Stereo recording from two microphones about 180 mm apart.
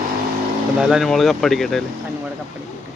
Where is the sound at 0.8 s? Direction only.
Centre (ahead or behind).